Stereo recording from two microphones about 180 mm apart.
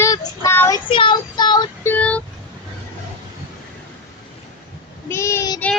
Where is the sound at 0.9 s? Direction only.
25° left (ahead or behind).